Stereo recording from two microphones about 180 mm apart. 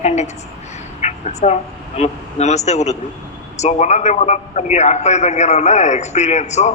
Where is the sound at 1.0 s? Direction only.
40° left (ahead or behind).